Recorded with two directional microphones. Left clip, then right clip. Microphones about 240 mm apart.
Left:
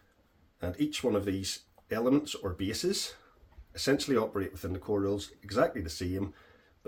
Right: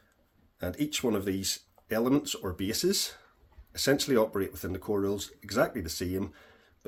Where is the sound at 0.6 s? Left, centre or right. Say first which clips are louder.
Right 1 dB; right.